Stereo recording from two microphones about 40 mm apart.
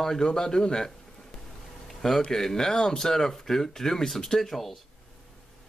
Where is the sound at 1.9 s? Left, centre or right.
Centre.